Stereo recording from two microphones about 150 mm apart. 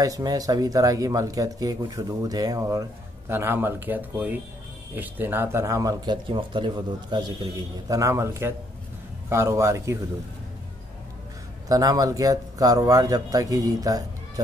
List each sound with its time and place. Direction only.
0.0 s speech: 25° right (ahead or behind)
11.7 s speech: 25° right (ahead or behind)